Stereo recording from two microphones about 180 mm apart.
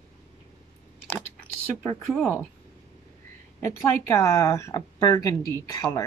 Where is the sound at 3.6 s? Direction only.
15° left (ahead or behind).